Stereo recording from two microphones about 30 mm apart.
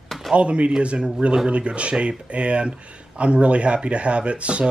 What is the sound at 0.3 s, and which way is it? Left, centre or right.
Speech, right.